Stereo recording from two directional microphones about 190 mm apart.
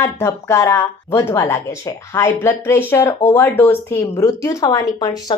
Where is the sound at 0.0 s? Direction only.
15° left (ahead or behind).